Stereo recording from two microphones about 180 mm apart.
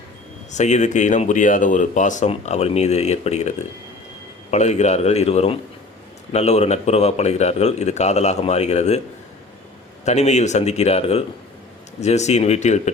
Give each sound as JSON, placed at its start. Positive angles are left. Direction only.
{"t": 0.5, "sound": "speech", "side_deg": 40}
{"t": 4.5, "sound": "speech", "side_deg": 40}
{"t": 10.1, "sound": "speech", "side_deg": 40}